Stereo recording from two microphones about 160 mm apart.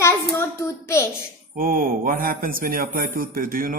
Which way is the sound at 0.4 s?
15° left (ahead or behind).